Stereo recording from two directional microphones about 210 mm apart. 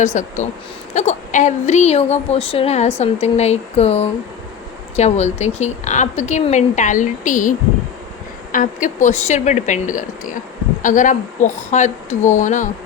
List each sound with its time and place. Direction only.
0.0 s a woman's voice: 35° left (ahead or behind)
8.5 s a woman's voice: 35° left (ahead or behind)